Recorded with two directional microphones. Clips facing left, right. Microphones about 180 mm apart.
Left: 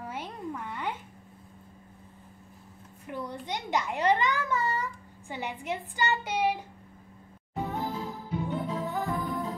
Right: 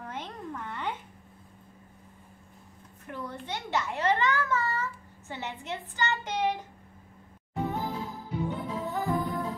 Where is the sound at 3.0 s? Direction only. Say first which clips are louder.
Left 2 dB; 15° left (ahead or behind).